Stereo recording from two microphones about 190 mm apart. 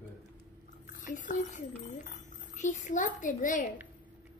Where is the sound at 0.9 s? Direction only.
40° left (ahead or behind).